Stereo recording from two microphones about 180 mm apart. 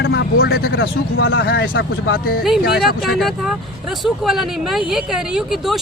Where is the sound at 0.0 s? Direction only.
75° left (ahead or behind); by 2.4 s 55° left (ahead or behind).